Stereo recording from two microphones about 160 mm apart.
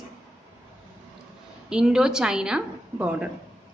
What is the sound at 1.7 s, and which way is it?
Speech, 5° right (ahead or behind).